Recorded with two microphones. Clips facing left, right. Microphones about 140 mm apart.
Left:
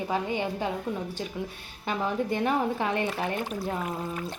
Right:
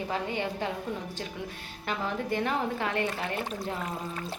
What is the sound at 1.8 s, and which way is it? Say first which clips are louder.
A woman's voice: left 4 dB; 15° left (ahead or behind).